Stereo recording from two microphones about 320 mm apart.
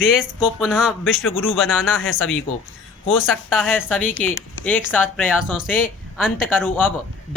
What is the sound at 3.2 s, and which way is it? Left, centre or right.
Speech, centre.